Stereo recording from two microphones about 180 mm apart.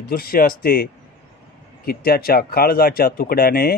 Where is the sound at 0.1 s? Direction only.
55° left (ahead or behind).